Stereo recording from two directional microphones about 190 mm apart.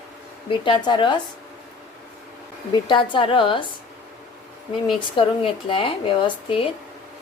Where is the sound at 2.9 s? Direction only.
25° left (ahead or behind).